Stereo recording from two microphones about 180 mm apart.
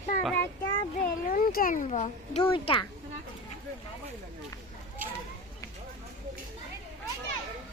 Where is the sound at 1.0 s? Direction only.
50° left (ahead or behind).